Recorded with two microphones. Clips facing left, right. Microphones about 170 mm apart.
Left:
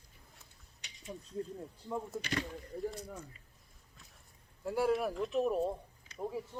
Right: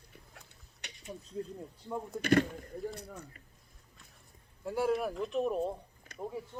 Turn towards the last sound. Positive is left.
turn(degrees=0)  # may be behind; listen again after turning